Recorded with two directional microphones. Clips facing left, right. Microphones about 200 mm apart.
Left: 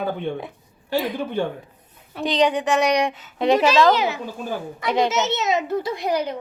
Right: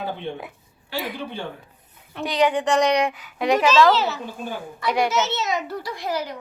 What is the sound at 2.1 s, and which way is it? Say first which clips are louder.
Speech: left 1 dB; 20° left (ahead or behind).